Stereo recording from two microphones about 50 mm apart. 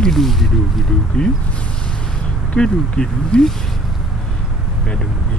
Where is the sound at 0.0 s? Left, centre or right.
Centre.